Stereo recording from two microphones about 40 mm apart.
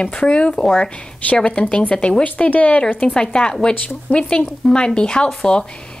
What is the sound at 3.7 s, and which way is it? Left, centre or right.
Speech, left.